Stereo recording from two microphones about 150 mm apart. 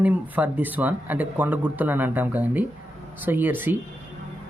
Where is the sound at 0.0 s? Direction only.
10° right (ahead or behind).